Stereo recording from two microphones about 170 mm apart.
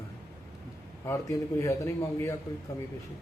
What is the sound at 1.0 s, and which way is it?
A man's voice, 15° left (ahead or behind).